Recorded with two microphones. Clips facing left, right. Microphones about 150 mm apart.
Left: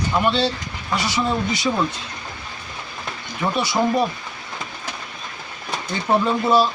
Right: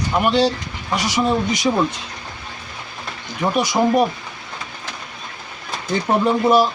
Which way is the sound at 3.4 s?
15° right (ahead or behind).